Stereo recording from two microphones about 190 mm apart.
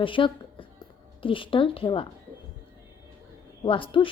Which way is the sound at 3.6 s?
25° left (ahead or behind).